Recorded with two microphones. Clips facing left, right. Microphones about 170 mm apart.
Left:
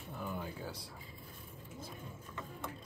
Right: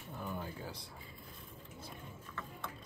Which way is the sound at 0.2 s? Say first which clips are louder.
Left 1 dB; 15° right (ahead or behind).